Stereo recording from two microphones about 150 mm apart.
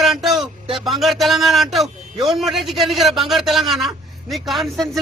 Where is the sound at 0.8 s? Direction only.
Centre (ahead or behind).